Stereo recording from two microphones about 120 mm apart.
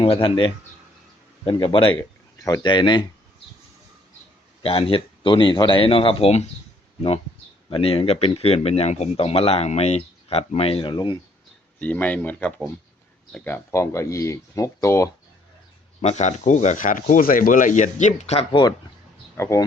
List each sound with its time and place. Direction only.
0.0 s speech: 50° left (ahead or behind)
1.5 s speech: 45° left (ahead or behind)
4.6 s speech: 55° left (ahead or behind)
7.7 s speech: 50° left (ahead or behind)
11.8 s speech: 15° left (ahead or behind)
16.0 s speech: 70° left (ahead or behind)
19.4 s speech: 25° left (ahead or behind)